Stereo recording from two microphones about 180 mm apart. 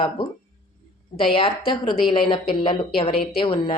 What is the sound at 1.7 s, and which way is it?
A woman's voice, 30° left (ahead or behind).